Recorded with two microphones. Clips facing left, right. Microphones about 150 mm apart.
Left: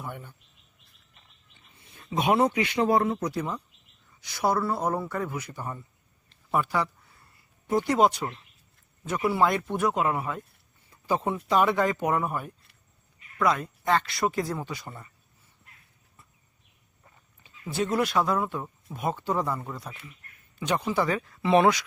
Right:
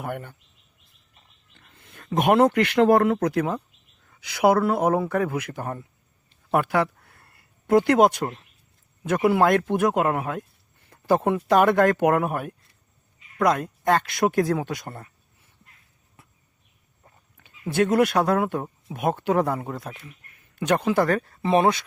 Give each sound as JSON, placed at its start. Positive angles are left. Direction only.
{"t": 0.0, "sound": "speech", "side_deg": -65}
{"t": 1.5, "sound": "a sound", "side_deg": -55}
{"t": 2.9, "sound": "speech", "side_deg": -60}
{"t": 4.0, "sound": "speech", "side_deg": -70}
{"t": 6.5, "sound": "a sound", "side_deg": -60}
{"t": 8.0, "sound": "speech", "side_deg": -50}
{"t": 13.4, "sound": "speech", "side_deg": -50}
{"t": 17.3, "sound": "speech", "side_deg": -70}
{"t": 21.5, "sound": "speech", "side_deg": -30}